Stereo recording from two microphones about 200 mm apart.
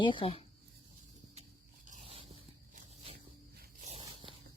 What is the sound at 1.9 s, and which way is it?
Dog, 30° right (ahead or behind).